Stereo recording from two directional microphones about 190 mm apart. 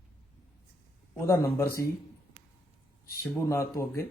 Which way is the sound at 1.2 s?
15° left (ahead or behind).